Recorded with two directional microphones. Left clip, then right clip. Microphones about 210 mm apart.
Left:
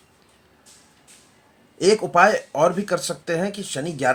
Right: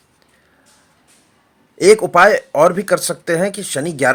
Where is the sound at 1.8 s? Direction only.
40° right (ahead or behind).